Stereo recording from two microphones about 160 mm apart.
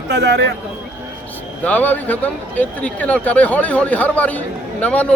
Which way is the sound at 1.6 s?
10° left (ahead or behind).